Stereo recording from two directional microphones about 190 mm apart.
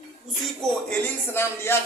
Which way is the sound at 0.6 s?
5° left (ahead or behind).